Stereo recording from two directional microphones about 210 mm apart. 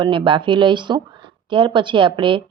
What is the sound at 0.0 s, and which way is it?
A woman's voice, 25° right (ahead or behind).